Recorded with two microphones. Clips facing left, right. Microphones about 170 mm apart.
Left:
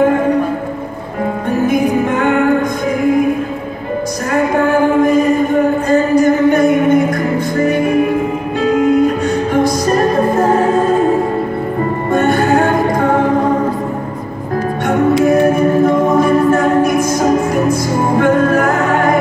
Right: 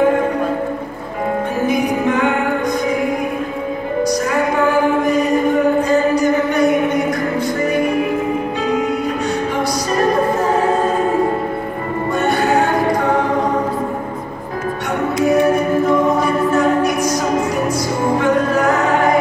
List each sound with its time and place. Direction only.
1.7 s music: 50° left (ahead or behind)
5.9 s music: 50° left (ahead or behind)
12.1 s music: 50° left (ahead or behind)
16.2 s music: 50° left (ahead or behind)
18.2 s music: 50° left (ahead or behind)